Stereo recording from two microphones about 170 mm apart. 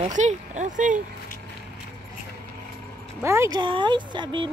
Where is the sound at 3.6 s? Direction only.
30° right (ahead or behind).